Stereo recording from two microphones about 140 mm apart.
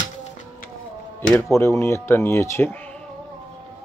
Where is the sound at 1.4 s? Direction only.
20° left (ahead or behind).